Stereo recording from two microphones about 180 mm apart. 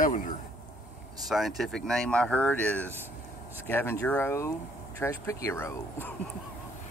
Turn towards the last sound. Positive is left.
turn(degrees=15)  # may be behind; listen again after turning